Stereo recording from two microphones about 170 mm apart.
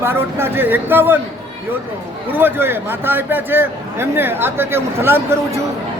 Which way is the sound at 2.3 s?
10° right (ahead or behind).